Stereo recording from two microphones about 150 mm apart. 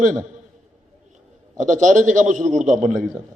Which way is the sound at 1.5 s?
55° right (ahead or behind).